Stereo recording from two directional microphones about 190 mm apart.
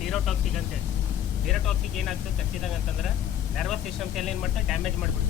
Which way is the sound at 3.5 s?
Centre (ahead or behind).